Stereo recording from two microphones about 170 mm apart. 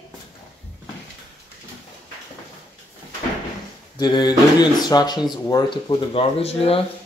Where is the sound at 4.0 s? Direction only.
25° left (ahead or behind).